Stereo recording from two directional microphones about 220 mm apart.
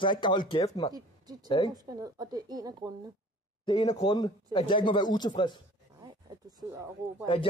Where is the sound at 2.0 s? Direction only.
15° right (ahead or behind).